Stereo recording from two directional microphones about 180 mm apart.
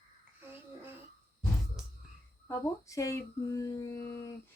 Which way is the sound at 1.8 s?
Centre (ahead or behind).